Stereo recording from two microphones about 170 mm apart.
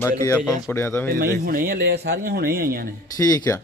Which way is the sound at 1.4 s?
55° right (ahead or behind).